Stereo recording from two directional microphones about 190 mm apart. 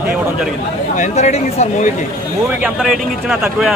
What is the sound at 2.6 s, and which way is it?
Speech, 5° right (ahead or behind).